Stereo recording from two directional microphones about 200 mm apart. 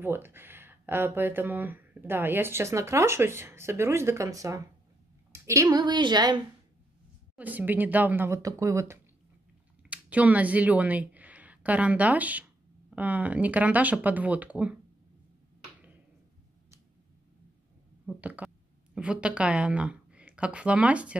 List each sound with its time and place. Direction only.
0.0 s a woman's voice: 10° right (ahead or behind)
7.3 s speech: 10° right (ahead or behind)
18.0 s a woman's voice: 5° right (ahead or behind)